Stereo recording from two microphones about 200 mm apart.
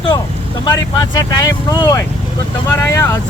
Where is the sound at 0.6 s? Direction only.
20° left (ahead or behind).